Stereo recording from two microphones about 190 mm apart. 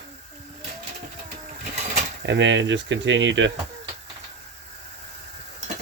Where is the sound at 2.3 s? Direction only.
70° right (ahead or behind).